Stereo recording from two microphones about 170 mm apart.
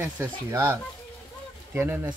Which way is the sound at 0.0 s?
15° right (ahead or behind).